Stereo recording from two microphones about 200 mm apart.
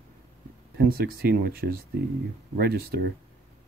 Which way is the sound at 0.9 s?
50° right (ahead or behind).